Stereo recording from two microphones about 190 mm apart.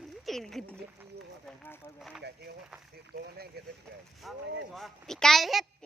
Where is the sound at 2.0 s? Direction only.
Centre (ahead or behind).